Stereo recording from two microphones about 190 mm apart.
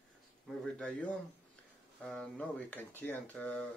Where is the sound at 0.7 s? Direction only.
5° left (ahead or behind).